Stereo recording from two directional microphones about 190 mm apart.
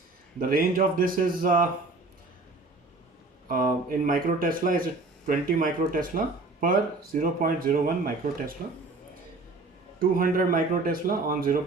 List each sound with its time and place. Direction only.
0.3 s speech: 50° right (ahead or behind)
3.5 s speech: 45° right (ahead or behind)
10.0 s speech: 45° right (ahead or behind)